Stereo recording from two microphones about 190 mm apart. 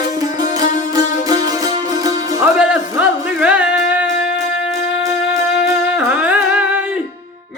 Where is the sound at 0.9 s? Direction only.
20° right (ahead or behind).